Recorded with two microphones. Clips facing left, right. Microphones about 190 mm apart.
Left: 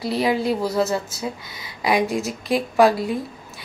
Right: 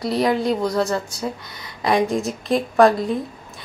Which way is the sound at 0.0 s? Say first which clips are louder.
Right 1 dB; 5° left (ahead or behind).